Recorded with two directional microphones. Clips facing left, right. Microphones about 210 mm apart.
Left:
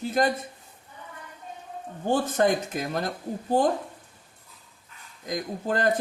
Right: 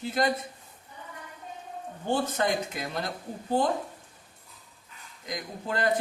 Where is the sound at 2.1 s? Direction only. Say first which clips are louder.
Left 4 dB; 45° left (ahead or behind).